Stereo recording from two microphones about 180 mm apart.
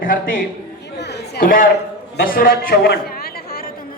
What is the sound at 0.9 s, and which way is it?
Chatter, 70° left (ahead or behind).